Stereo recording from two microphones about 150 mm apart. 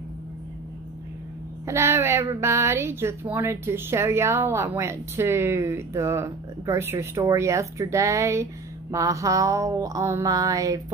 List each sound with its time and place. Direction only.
1.7 s a woman's voice: 20° right (ahead or behind)
8.9 s mantra: 20° right (ahead or behind)